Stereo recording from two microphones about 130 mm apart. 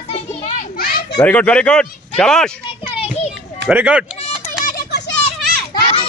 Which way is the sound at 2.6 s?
45° left (ahead or behind).